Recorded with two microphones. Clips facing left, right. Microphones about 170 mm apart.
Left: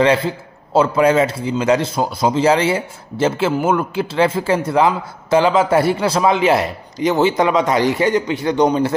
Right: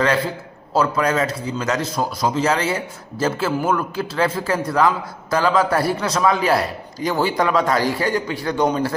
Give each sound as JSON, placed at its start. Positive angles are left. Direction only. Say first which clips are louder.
{"t": 0.0, "sound": "speech", "louder": "left 4 dB", "side_deg": 25}